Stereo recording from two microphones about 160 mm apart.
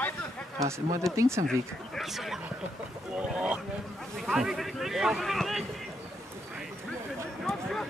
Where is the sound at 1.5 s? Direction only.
Centre (ahead or behind).